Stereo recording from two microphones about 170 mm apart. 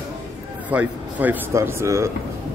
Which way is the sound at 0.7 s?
10° right (ahead or behind).